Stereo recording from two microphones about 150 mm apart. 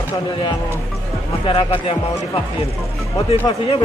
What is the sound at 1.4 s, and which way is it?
Speech, 35° left (ahead or behind).